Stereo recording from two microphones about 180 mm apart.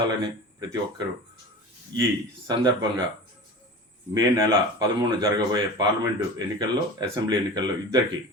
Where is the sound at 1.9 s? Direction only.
25° right (ahead or behind).